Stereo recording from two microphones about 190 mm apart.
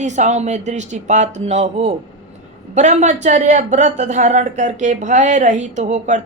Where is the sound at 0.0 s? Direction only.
40° right (ahead or behind).